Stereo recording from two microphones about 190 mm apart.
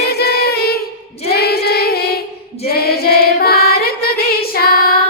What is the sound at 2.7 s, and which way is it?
Singing, 55° left (ahead or behind).